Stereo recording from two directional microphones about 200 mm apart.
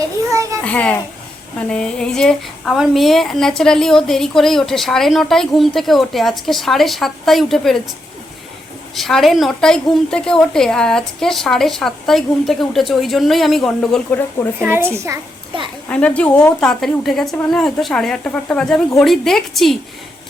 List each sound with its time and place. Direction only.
0.3 s a sound: 15° right (ahead or behind)
0.6 s a child's voice: 5° left (ahead or behind)
9.0 s a woman's voice: centre (ahead or behind)
14.6 s a woman's voice: 10° right (ahead or behind)
15.9 s a woman's voice: 5° left (ahead or behind)